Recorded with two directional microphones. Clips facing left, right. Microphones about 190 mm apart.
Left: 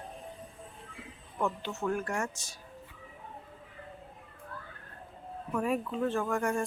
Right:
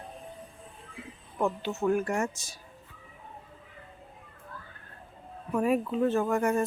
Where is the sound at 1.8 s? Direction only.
10° right (ahead or behind).